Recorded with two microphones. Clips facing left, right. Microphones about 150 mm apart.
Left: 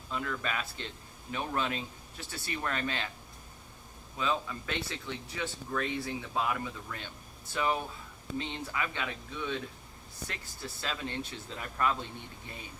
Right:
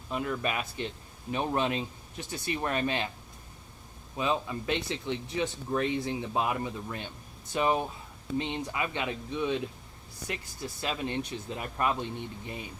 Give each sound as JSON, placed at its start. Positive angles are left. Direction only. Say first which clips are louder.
{"t": 0.1, "sound": "speech", "louder": "right 4 dB", "side_deg": -20}
{"t": 4.2, "sound": "speech", "louder": "right 3 dB", "side_deg": -20}